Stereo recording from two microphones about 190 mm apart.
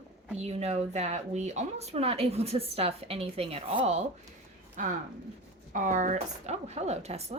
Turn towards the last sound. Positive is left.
turn(degrees=-35)  # may be behind; listen again after turning